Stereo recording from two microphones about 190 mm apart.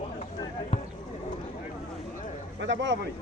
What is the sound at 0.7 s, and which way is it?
Basketball bounce, 30° left (ahead or behind).